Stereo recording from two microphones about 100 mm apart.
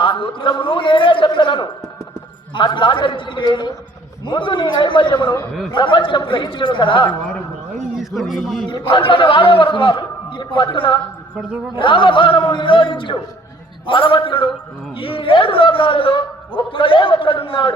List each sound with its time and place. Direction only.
0.0 s a man's voice: 55° left (ahead or behind)
7.9 s a man's voice: centre (ahead or behind)
8.7 s a man's voice: 60° left (ahead or behind)